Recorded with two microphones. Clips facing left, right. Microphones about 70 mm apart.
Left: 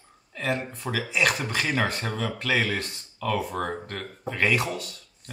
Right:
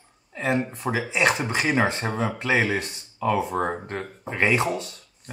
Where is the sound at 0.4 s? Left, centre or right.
Right.